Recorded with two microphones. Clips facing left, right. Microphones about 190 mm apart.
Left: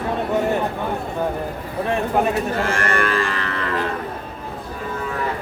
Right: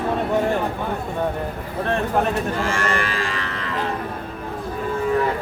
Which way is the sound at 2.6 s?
55° left (ahead or behind).